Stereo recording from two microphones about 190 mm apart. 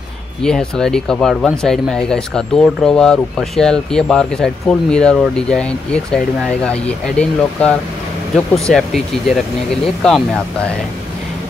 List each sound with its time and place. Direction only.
0.4 s speech: 5° left (ahead or behind)